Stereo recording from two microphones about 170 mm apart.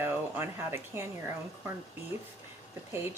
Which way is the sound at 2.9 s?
15° right (ahead or behind).